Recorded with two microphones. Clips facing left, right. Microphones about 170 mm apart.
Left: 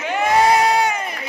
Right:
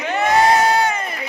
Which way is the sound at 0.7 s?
10° left (ahead or behind).